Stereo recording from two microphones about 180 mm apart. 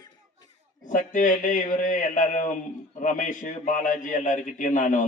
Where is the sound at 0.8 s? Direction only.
45° left (ahead or behind).